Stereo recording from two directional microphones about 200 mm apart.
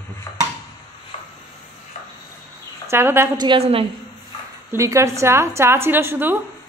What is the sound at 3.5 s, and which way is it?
Speech, 30° right (ahead or behind).